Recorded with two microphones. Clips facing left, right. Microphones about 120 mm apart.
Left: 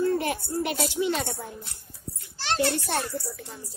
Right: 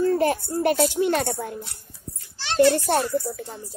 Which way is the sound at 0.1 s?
40° right (ahead or behind).